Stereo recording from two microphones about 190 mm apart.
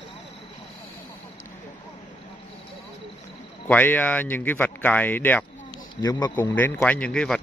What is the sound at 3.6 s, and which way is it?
Speech, 10° left (ahead or behind).